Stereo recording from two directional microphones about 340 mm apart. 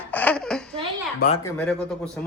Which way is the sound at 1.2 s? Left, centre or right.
Left.